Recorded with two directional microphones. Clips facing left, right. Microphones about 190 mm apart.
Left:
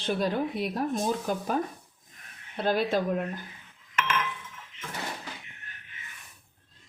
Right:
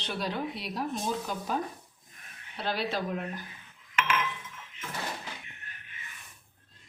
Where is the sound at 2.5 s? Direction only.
50° left (ahead or behind).